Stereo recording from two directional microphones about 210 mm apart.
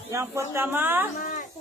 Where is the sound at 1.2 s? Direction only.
35° left (ahead or behind).